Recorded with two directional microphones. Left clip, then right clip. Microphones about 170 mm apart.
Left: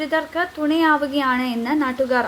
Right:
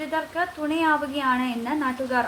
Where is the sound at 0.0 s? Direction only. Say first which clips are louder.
Left 5 dB; 35° left (ahead or behind).